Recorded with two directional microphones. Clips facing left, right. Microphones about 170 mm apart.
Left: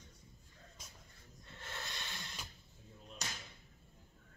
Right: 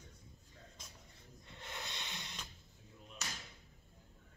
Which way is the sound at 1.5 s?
15° right (ahead or behind).